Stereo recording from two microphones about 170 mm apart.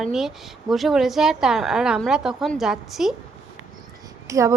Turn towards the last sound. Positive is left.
turn(degrees=-20)  # may be behind; listen again after turning